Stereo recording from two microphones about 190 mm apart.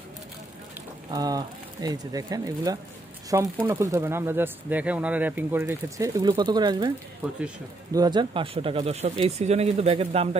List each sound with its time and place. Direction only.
1.1 s speech: 20° right (ahead or behind)
7.9 s speech: 20° right (ahead or behind)